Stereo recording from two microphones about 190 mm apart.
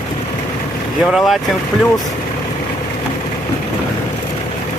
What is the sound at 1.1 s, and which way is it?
Speech, centre (ahead or behind).